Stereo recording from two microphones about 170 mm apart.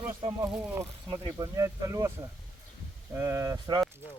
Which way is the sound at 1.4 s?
20° right (ahead or behind).